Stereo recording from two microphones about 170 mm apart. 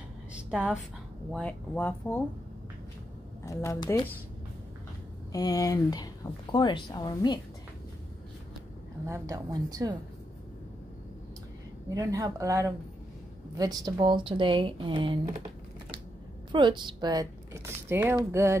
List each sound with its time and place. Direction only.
0.3 s a sound: 5° right (ahead or behind)
1.3 s speech: 10° left (ahead or behind)
3.4 s speech: 20° left (ahead or behind)
5.3 s speech: 20° left (ahead or behind)
9.0 s speech: 20° right (ahead or behind)
11.9 s speech: 20° right (ahead or behind)
16.5 s speech: 25° right (ahead or behind)